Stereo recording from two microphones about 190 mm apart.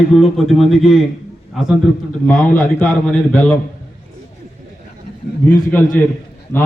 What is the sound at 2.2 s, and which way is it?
A man's voice, 10° left (ahead or behind).